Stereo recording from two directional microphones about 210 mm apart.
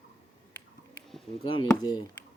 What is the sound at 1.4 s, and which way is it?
Speech, 25° left (ahead or behind).